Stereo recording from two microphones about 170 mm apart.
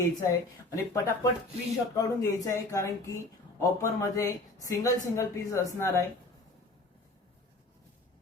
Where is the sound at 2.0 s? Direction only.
20° left (ahead or behind).